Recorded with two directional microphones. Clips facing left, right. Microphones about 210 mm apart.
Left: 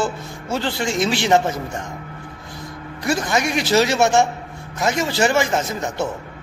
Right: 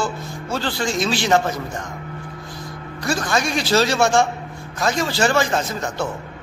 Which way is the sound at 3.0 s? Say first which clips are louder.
Left 1 dB; 20° left (ahead or behind).